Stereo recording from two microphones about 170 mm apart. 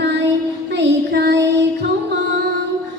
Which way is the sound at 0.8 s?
85° right.